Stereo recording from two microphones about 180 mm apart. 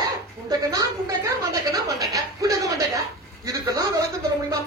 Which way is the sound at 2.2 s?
20° right (ahead or behind).